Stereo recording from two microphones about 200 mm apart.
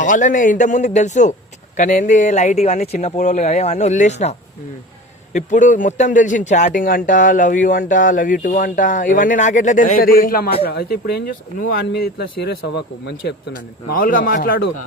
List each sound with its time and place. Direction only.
0.0 s speech: 40° left (ahead or behind); by 13.3 s 55° left (ahead or behind)
13.5 s speech: 45° left (ahead or behind)